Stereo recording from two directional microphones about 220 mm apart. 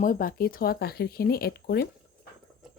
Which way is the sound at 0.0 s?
40° left (ahead or behind).